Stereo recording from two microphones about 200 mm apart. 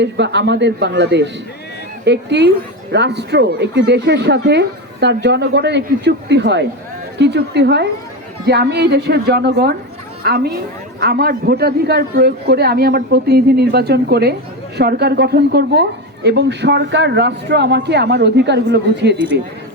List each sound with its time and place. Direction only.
0.0 s a man's voice: 60° right (ahead or behind)